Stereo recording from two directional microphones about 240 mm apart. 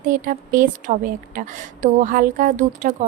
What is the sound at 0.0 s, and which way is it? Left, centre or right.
A woman's voice, right.